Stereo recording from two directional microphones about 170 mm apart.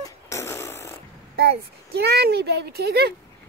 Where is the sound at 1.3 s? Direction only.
70° right (ahead or behind).